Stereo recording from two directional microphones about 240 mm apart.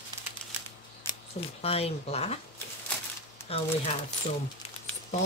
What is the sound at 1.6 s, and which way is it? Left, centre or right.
Speech, left.